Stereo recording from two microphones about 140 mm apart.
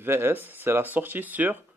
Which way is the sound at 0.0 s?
15° right (ahead or behind).